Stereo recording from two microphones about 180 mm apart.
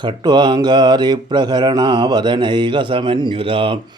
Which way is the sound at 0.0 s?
25° right (ahead or behind).